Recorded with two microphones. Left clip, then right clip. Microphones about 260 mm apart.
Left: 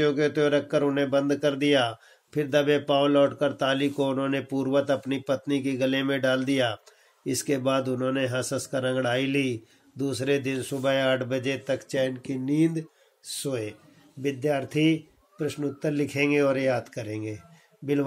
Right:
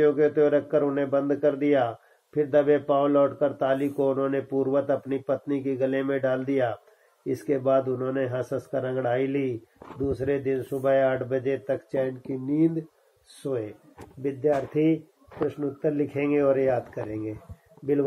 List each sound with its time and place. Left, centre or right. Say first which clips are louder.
0.0 s speech: right 3 dB; left